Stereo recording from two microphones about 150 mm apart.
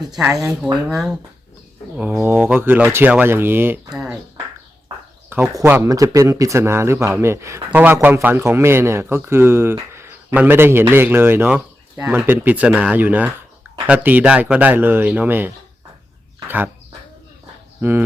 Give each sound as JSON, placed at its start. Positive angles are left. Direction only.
{"t": 0.2, "sound": "speech", "side_deg": -5}
{"t": 2.0, "sound": "speech", "side_deg": -15}
{"t": 3.8, "sound": "a sound", "side_deg": -5}
{"t": 5.3, "sound": "speech", "side_deg": -15}
{"t": 17.7, "sound": "speech", "side_deg": -15}